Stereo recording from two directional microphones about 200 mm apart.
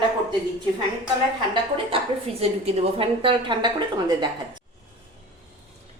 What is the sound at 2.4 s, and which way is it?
A woman's voice, 30° right (ahead or behind).